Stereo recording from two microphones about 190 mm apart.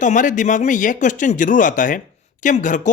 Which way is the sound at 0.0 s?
40° left (ahead or behind).